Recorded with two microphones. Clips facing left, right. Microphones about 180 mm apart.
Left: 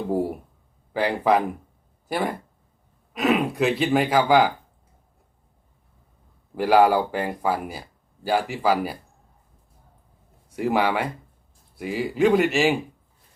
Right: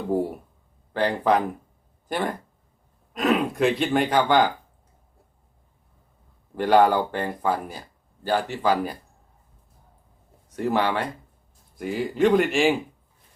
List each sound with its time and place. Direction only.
0.1 s a sound: 10° left (ahead or behind)
0.9 s speech: 10° left (ahead or behind)
6.6 s speech: 10° left (ahead or behind)
10.5 s speech: 10° left (ahead or behind)